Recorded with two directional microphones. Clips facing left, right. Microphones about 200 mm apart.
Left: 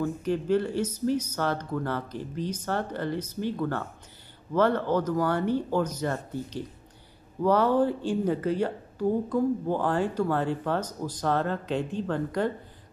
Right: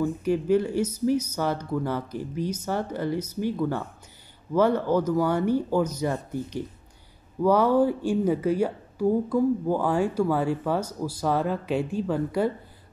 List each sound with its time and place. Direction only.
0.0 s speech: 10° right (ahead or behind)